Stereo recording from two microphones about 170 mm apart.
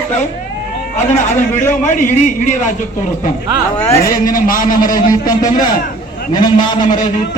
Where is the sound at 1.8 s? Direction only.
50° left (ahead or behind).